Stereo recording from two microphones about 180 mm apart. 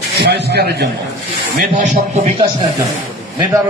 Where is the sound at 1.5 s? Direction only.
45° right (ahead or behind).